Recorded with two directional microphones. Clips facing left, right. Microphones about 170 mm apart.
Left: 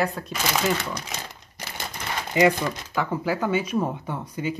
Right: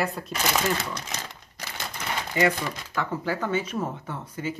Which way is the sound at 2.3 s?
15° left (ahead or behind).